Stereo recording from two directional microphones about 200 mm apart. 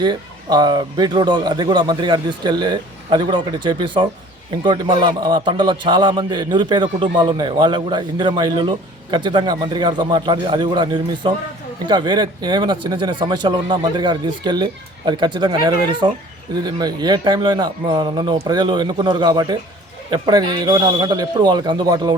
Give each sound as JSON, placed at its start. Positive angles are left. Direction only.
{"t": 0.0, "sound": "a man's voice", "side_deg": -20}